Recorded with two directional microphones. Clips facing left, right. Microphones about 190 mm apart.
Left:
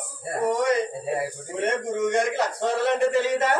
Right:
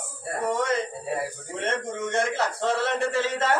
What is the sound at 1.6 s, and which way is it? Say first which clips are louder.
A man's voice: left 4 dB; 15° left (ahead or behind).